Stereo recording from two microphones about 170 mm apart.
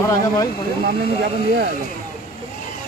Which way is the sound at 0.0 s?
15° left (ahead or behind).